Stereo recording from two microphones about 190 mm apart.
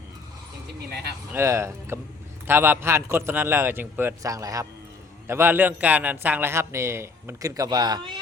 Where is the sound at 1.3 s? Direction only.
15° right (ahead or behind).